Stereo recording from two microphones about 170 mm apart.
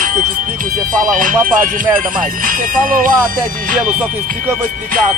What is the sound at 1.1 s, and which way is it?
Music, 50° right (ahead or behind).